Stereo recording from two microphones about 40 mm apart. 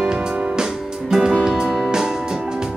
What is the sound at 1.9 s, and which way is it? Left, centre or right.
Music, centre.